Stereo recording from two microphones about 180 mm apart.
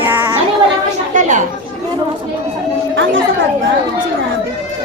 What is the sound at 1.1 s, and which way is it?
Speech, 45° right (ahead or behind).